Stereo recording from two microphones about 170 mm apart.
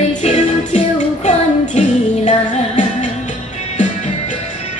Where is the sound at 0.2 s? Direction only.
40° left (ahead or behind).